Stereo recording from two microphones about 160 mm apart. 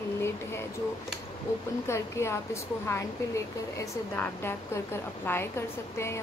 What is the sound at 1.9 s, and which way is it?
Speech, 15° left (ahead or behind).